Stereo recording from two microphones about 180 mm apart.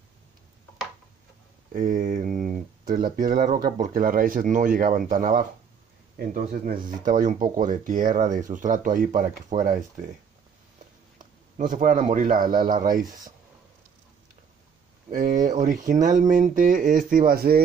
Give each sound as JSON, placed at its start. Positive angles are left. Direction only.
{"t": 1.7, "sound": "speech", "side_deg": -50}
{"t": 6.5, "sound": "speech", "side_deg": -50}
{"t": 11.5, "sound": "speech", "side_deg": -45}
{"t": 15.0, "sound": "speech", "side_deg": -45}